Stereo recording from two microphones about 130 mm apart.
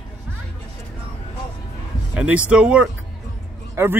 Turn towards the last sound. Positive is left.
turn(degrees=-15)  # may be behind; listen again after turning